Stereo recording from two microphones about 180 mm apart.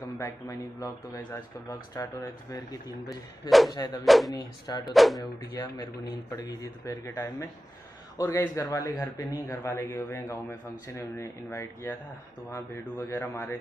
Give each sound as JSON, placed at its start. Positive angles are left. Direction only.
{"t": 0.0, "sound": "a man's voice", "side_deg": 20}
{"t": 3.4, "sound": "speech", "side_deg": 0}
{"t": 4.3, "sound": "a man's voice", "side_deg": 20}
{"t": 4.9, "sound": "speech", "side_deg": 0}
{"t": 5.5, "sound": "a man's voice", "side_deg": 20}